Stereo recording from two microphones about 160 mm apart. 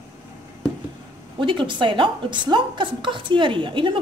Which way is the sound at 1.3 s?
30° right (ahead or behind).